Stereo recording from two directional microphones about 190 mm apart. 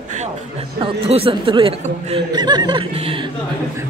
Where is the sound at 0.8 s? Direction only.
30° right (ahead or behind).